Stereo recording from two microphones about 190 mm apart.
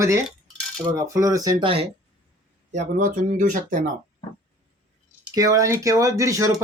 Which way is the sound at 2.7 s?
40° right (ahead or behind).